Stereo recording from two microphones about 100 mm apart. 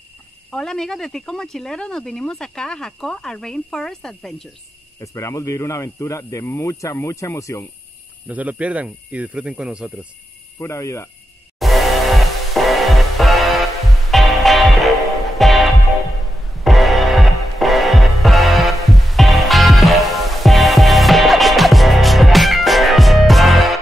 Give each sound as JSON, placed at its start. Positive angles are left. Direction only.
{"t": 0.5, "sound": "speech", "side_deg": 5}
{"t": 5.0, "sound": "speech", "side_deg": 30}
{"t": 8.3, "sound": "speech", "side_deg": -15}
{"t": 10.6, "sound": "speech", "side_deg": 30}
{"t": 11.6, "sound": "music", "side_deg": 0}